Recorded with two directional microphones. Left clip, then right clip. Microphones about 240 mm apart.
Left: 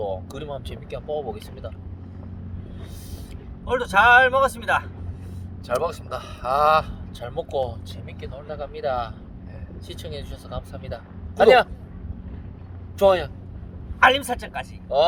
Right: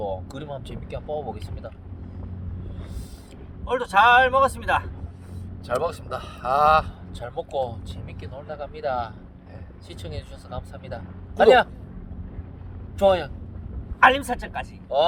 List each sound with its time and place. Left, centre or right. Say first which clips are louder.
0.0 s speech: left 1 dB; left
3.7 s speech: left 1 dB; centre
7.2 s speech: left 1 dB; left
13.0 s speech: left 2 dB; left
14.0 s a man's voice: even; centre